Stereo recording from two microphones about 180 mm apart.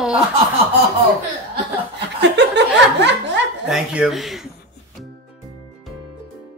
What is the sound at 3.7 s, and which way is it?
Speech, 5° right (ahead or behind).